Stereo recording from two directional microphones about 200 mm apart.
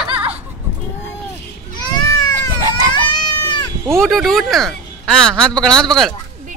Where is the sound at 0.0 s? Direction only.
5° right (ahead or behind).